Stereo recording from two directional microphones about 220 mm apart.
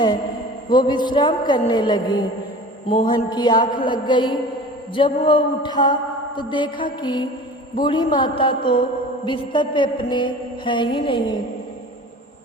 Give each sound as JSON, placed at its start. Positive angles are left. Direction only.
{"t": 0.7, "sound": "mantra", "side_deg": 20}